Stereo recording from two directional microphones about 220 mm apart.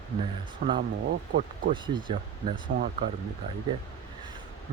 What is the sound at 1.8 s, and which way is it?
Speech, 20° right (ahead or behind).